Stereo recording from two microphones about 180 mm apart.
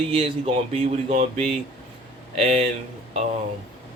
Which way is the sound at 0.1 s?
30° right (ahead or behind).